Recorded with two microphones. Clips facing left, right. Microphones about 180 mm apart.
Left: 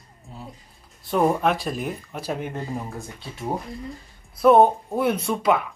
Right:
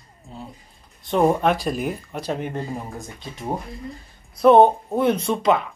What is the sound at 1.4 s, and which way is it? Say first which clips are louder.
Speech: right 2 dB; centre (ahead or behind).